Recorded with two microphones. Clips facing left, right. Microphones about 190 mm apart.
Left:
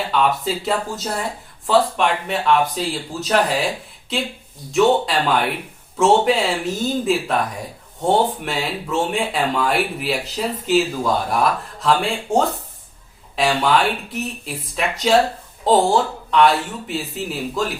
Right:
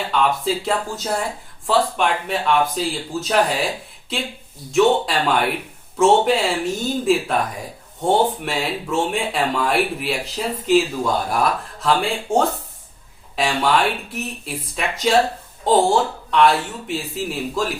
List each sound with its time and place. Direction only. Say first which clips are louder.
0.1 s speech: right 1 dB; centre (ahead or behind)
8.4 s speech: right 1 dB; centre (ahead or behind)